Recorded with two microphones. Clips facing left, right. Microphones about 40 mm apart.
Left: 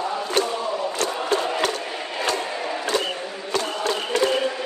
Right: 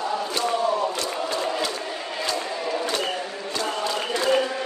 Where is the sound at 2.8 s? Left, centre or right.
Left.